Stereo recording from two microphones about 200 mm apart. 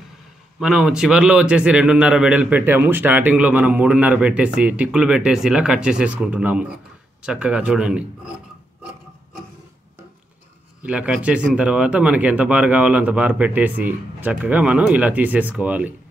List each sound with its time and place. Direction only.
0.6 s a man's voice: centre (ahead or behind)
10.8 s speech: 5° right (ahead or behind)